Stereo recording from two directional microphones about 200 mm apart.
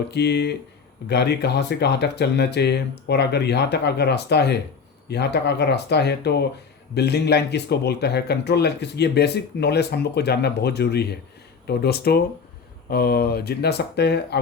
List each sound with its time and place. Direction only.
0.1 s speech: 55° left (ahead or behind)